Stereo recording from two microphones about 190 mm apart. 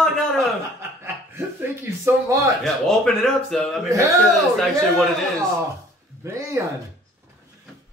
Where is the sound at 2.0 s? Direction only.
15° right (ahead or behind).